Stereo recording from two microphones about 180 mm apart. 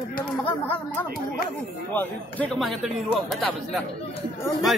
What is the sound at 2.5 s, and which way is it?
Speech, centre (ahead or behind).